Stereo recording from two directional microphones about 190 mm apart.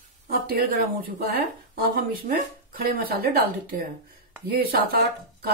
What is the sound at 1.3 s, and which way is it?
Speech, 50° right (ahead or behind).